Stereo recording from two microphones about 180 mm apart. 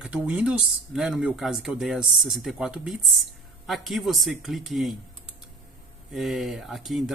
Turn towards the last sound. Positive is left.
turn(degrees=0)  # may be behind; listen again after turning